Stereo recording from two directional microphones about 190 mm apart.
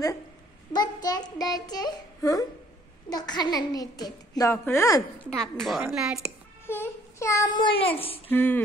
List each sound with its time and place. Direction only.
0.7 s a child's voice: 20° left (ahead or behind)
5.4 s speech: centre (ahead or behind)
6.6 s speech: 10° left (ahead or behind); by 8.2 s 30° left (ahead or behind)
8.3 s speech: 10° left (ahead or behind)